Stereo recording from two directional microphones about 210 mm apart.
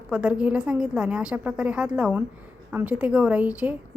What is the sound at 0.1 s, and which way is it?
A woman's voice, 5° right (ahead or behind).